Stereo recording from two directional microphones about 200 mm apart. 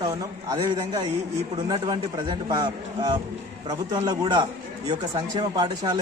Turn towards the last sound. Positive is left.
turn(degrees=-20)  # may be behind; listen again after turning